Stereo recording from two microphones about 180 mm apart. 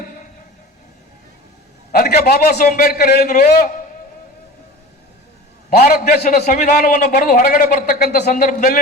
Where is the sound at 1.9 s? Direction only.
60° left (ahead or behind).